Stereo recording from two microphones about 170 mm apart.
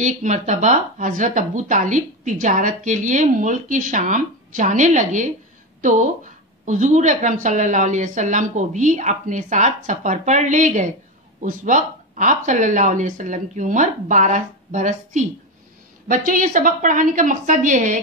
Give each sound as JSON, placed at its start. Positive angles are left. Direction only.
{"t": 0.0, "sound": "speech", "side_deg": -45}